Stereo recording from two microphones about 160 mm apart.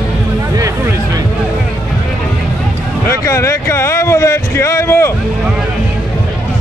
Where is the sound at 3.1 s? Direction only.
20° left (ahead or behind).